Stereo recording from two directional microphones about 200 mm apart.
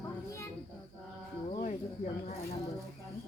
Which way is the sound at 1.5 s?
35° left (ahead or behind).